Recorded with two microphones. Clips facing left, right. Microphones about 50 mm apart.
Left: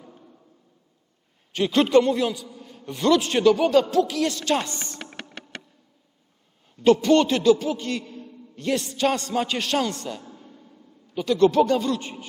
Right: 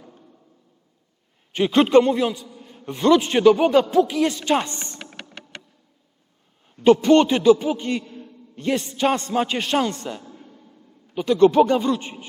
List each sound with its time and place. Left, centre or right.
1.5 s a man's voice: centre
2.5 s a sound: centre
2.8 s a man's voice: centre
4.7 s speech: right
4.9 s music: centre
6.8 s a man's voice: centre